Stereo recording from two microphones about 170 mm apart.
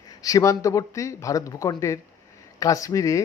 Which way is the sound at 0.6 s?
20° left (ahead or behind).